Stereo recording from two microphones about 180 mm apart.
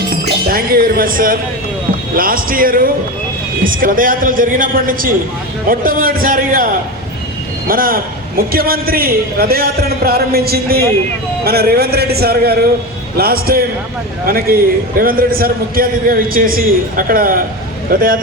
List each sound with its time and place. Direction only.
0.1 s a man's voice: 55° right (ahead or behind)